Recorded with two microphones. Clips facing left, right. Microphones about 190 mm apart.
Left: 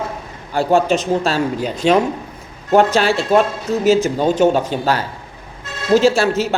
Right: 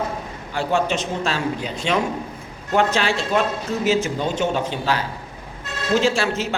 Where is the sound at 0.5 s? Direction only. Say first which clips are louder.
Left 6 dB; 40° left (ahead or behind).